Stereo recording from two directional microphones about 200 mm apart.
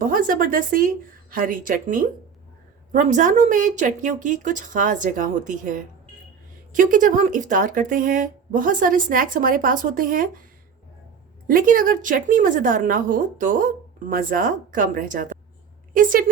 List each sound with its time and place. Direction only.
0.0 s a woman's voice: 45° right (ahead or behind)
11.4 s a woman's voice: 45° right (ahead or behind)
16.0 s a sound: 40° right (ahead or behind)